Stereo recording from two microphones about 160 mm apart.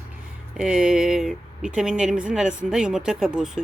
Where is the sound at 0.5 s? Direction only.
5° right (ahead or behind).